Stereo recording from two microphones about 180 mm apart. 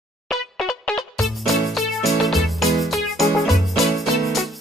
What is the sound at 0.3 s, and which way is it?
Music, centre (ahead or behind).